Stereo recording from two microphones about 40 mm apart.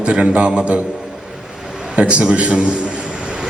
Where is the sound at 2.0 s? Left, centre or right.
Right.